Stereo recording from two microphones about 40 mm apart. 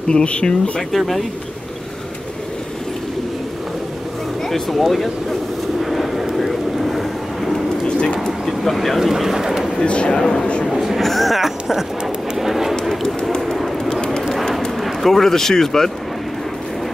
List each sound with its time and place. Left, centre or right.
0.1 s speech: left
0.7 s speech: centre
4.5 s speech: centre
5.8 s vehicle: centre
8.3 s speech: centre
9.0 s speech: centre
9.8 s speech: left
10.1 s speech: centre
10.6 s a sound: centre
11.0 s speech: centre
12.4 s a sound: centre
14.8 s speech: centre